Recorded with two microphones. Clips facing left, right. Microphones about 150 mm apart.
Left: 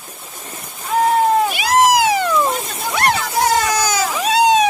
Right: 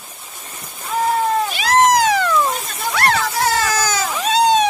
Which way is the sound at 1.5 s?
10° left (ahead or behind).